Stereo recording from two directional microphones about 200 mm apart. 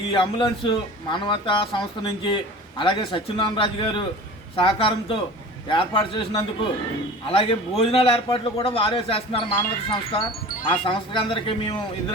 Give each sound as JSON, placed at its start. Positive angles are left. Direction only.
{"t": 0.1, "sound": "a man's voice", "side_deg": 25}